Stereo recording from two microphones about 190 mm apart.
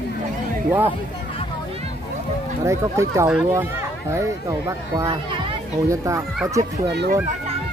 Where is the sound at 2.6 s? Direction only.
15° right (ahead or behind).